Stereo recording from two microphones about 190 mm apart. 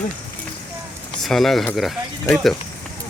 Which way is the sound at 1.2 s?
Centre (ahead or behind).